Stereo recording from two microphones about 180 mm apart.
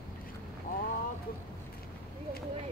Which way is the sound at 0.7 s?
50° left (ahead or behind).